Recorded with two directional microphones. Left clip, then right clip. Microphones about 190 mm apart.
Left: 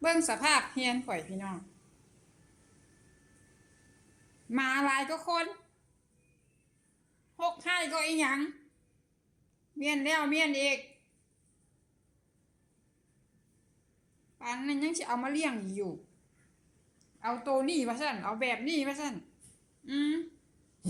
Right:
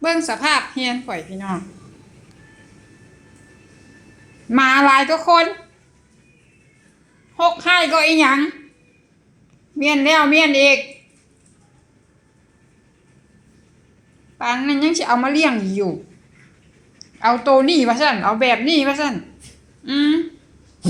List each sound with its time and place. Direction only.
0.0 s a woman's voice: 15° left (ahead or behind)
4.5 s a woman's voice: 15° left (ahead or behind)
7.3 s a woman's voice: 15° left (ahead or behind)
9.7 s a woman's voice: 20° left (ahead or behind)
14.3 s a woman's voice: 20° left (ahead or behind)
17.2 s a woman's voice: 15° left (ahead or behind)